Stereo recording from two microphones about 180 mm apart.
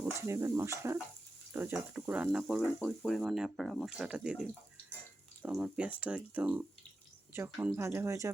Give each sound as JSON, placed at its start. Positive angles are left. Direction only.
{"t": 0.0, "sound": "speech", "side_deg": -15}
{"t": 2.6, "sound": "speech", "side_deg": 10}